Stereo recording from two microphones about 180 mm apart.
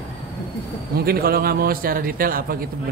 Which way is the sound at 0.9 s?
55° right (ahead or behind).